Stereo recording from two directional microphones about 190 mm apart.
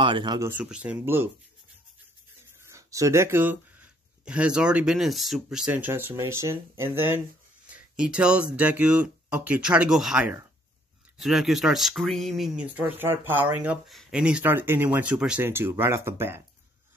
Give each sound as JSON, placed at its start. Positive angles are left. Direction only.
{"t": 0.0, "sound": "speech", "side_deg": -25}
{"t": 0.5, "sound": "speech", "side_deg": -5}
{"t": 2.6, "sound": "speech", "side_deg": -15}